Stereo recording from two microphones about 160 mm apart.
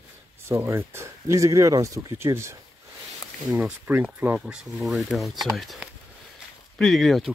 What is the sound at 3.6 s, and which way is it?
Speech, 10° right (ahead or behind).